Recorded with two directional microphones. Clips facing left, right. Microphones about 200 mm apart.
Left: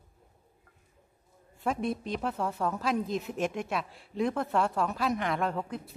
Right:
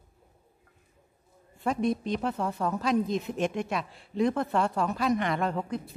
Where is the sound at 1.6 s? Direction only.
5° left (ahead or behind).